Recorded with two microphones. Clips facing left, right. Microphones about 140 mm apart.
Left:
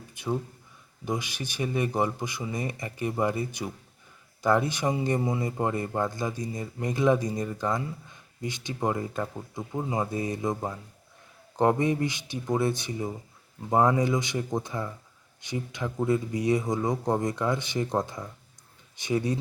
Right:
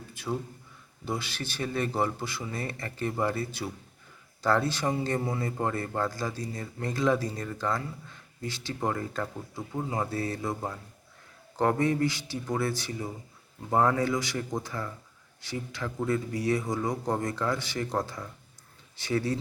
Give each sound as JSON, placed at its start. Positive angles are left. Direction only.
{"t": 0.1, "sound": "speech", "side_deg": 20}